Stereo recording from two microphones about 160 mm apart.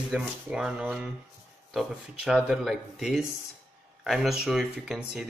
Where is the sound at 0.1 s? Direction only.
5° right (ahead or behind).